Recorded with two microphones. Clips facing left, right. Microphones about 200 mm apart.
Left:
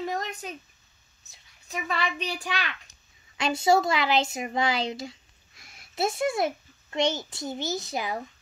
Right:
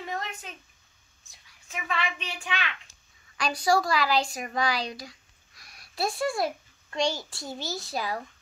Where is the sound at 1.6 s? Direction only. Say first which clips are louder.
Left 2 dB; 40° left (ahead or behind).